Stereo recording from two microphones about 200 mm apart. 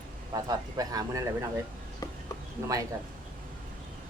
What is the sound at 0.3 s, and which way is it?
Speech, 20° right (ahead or behind).